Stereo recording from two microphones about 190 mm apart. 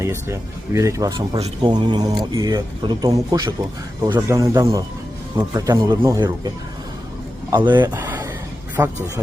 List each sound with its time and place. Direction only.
0.0 s speech: 15° right (ahead or behind)
1.4 s speech: 35° right (ahead or behind)
1.7 s speech: 20° right (ahead or behind)
7.5 s speech: 25° right (ahead or behind)
7.9 s a sound: 10° right (ahead or behind)
8.8 s speech: 15° right (ahead or behind)